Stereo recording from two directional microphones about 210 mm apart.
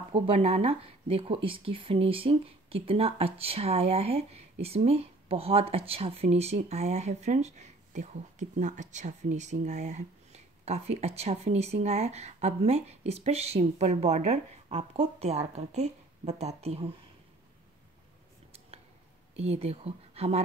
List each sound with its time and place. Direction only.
0.1 s speech: 30° right (ahead or behind)
19.4 s speech: 30° right (ahead or behind)